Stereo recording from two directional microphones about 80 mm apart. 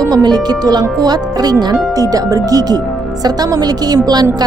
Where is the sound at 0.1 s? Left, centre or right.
Right.